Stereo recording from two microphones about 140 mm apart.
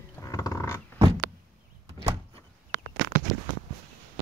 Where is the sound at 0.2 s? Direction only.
25° left (ahead or behind).